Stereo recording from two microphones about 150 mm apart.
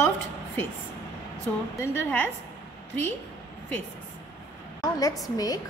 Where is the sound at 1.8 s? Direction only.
15° left (ahead or behind).